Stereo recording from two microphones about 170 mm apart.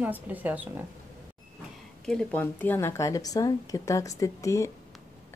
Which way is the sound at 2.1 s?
5° left (ahead or behind).